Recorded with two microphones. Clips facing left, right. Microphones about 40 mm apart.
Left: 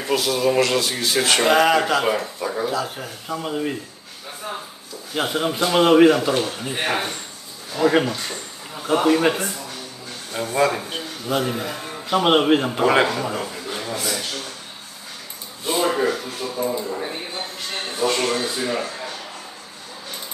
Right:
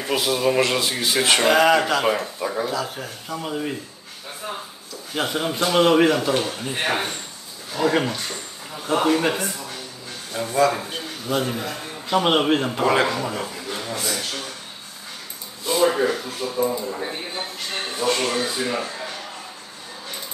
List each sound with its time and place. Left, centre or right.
0.0 s speech: centre
1.4 s a man's voice: centre
4.4 s a sound: centre
5.1 s a man's voice: centre
10.3 s a man's voice: left
11.2 s a man's voice: centre
12.8 s a man's voice: centre
13.1 s speech: centre
15.8 s speech: centre
16.2 s a sound: centre
16.8 s speech: centre